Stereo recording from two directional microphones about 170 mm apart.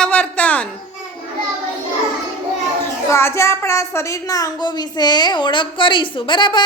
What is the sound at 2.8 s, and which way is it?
A child's voice, 15° left (ahead or behind).